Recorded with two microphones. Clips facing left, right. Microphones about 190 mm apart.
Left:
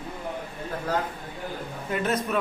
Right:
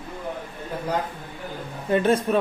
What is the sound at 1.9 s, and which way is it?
Speech, 30° right (ahead or behind).